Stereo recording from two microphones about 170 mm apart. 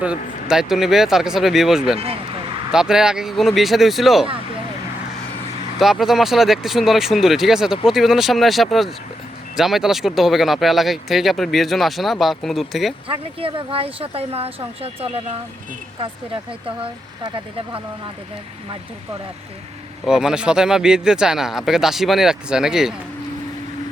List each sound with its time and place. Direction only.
0.4 s speech: 5° right (ahead or behind)
5.8 s speech: centre (ahead or behind)
13.1 s speech: 35° right (ahead or behind)
20.1 s speech: 5° right (ahead or behind)